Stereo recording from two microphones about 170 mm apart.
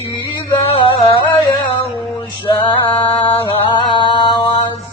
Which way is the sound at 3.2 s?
30° left (ahead or behind).